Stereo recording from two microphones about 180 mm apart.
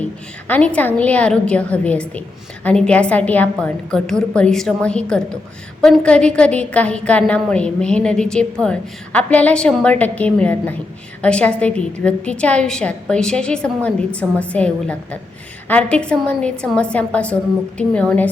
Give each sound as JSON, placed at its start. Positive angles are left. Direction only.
{"t": 0.0, "sound": "a woman's voice", "side_deg": 10}